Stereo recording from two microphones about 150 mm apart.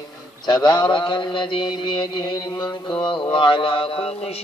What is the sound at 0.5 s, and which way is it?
Mantra, 30° left (ahead or behind).